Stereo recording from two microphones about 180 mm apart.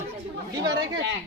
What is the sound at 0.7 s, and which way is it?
Speech, 85° right.